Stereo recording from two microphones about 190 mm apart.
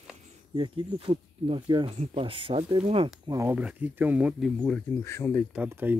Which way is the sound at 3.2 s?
15° right (ahead or behind).